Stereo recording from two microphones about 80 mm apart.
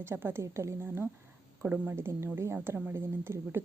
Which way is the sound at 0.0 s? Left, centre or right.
Right.